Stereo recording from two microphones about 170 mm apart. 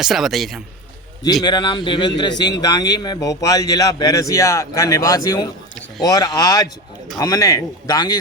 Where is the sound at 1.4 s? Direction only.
25° left (ahead or behind).